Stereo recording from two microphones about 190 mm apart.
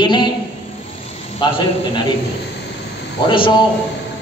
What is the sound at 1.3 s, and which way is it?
Speech, 25° left (ahead or behind).